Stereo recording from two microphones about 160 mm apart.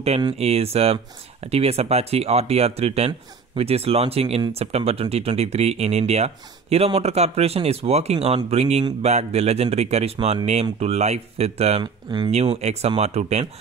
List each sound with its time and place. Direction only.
0.4 s a man's voice: 40° right (ahead or behind)
11.8 s speech: 30° right (ahead or behind)
12.5 s a man's voice: 40° right (ahead or behind)